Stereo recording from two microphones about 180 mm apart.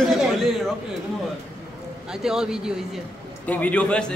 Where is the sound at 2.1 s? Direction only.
5° right (ahead or behind).